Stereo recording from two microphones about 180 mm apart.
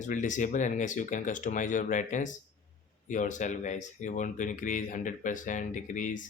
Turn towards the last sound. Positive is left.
turn(degrees=45)  # may be behind; listen again after turning